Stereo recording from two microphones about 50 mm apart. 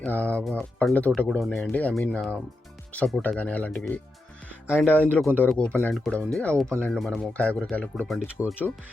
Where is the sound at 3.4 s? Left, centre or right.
Left.